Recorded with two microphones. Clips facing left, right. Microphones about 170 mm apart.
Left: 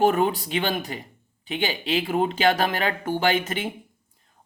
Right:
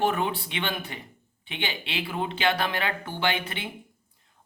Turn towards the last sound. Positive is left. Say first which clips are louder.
# left 5 dB
turn(degrees=40)  # may be behind; listen again after turning